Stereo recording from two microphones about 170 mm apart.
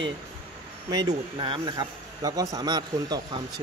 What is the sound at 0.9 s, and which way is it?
A man's voice, 25° right (ahead or behind).